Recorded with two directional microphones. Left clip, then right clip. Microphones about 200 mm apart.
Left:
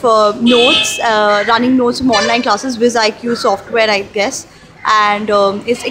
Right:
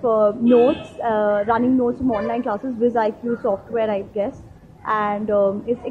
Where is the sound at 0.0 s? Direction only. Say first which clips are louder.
Left 7 dB; 20° left (ahead or behind).